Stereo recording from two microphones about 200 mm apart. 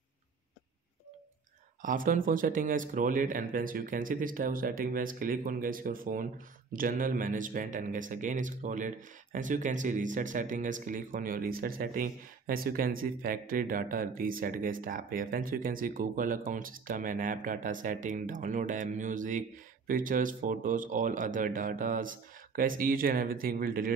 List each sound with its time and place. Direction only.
1.8 s speech: 40° right (ahead or behind)